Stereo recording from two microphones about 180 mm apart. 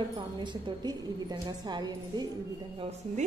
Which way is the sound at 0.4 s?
25° right (ahead or behind).